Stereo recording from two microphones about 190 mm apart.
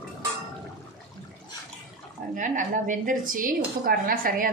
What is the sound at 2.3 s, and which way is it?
A woman's voice, 40° right (ahead or behind).